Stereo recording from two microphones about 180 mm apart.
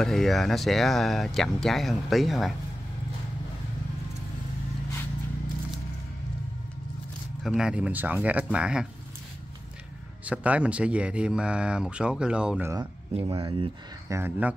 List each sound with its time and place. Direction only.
0.0 s speech: centre (ahead or behind)
7.4 s speech: 5° right (ahead or behind)
10.2 s speech: 10° right (ahead or behind)
13.1 s speech: 25° right (ahead or behind)